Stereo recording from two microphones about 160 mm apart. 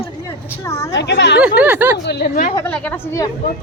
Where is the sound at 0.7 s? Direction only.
20° left (ahead or behind).